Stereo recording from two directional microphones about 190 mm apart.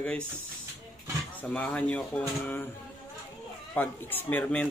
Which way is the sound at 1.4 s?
5° left (ahead or behind).